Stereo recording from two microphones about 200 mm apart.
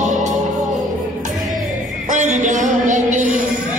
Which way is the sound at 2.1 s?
35° right (ahead or behind).